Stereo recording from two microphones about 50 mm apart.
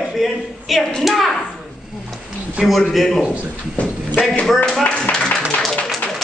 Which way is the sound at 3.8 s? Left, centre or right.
Left.